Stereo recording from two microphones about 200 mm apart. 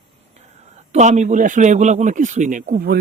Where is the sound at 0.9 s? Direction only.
35° right (ahead or behind).